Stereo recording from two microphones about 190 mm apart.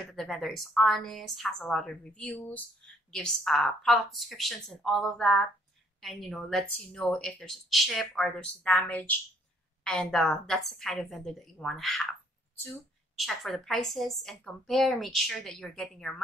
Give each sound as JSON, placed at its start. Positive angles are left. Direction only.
{"t": 0.1, "sound": "speech", "side_deg": 0}